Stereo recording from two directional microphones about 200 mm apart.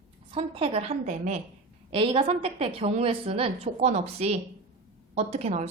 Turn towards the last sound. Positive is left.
turn(degrees=-35)  # may be behind; listen again after turning